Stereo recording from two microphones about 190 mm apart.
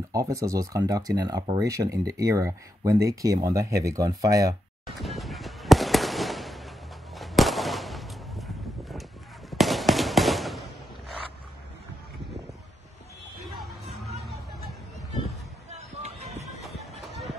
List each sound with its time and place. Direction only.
0.1 s speech: 15° right (ahead or behind)
4.8 s fireworks: centre (ahead or behind)
7.2 s a sound: centre (ahead or behind)
9.5 s fireworks: centre (ahead or behind)
13.5 s music: centre (ahead or behind)
14.2 s hubbub: centre (ahead or behind)
15.7 s a sound: 35° right (ahead or behind)